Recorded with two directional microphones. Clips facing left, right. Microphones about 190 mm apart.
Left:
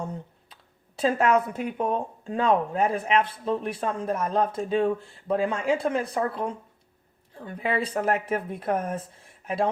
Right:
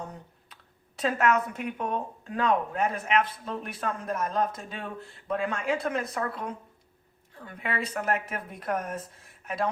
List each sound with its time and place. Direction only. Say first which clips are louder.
0.0 s speech: left 6 dB; 30° left (ahead or behind)